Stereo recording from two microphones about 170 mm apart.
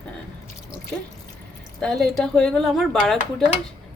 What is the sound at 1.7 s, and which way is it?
Speech, 5° left (ahead or behind).